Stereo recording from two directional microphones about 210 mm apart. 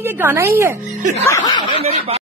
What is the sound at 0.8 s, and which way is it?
Speech, 35° right (ahead or behind).